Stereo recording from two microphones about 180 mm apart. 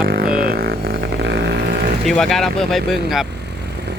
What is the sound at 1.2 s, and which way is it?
Vehicle, 70° right (ahead or behind).